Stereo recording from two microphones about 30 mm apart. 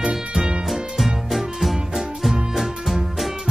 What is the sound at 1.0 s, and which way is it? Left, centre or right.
Music, centre.